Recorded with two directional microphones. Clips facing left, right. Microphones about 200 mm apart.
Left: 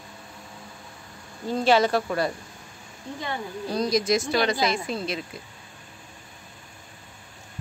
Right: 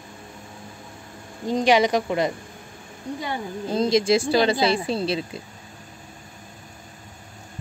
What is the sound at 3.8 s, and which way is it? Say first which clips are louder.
Speech: right 4 dB; 25° right (ahead or behind).